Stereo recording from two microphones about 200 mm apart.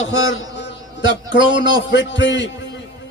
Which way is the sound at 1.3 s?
65° left (ahead or behind).